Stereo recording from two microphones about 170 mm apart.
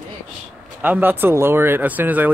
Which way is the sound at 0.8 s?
10° right (ahead or behind).